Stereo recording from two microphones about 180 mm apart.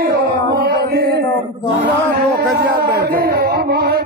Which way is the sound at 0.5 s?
65° right (ahead or behind).